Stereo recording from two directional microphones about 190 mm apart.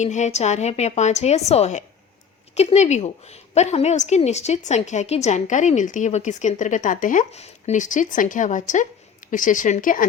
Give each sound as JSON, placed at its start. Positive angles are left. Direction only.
{"t": 0.0, "sound": "a woman's voice", "side_deg": 40}